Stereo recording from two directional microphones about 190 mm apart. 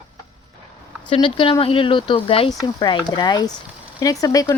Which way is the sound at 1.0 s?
25° left (ahead or behind).